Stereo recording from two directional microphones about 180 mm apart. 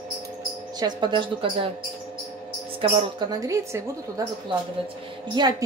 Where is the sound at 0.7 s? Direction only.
25° right (ahead or behind).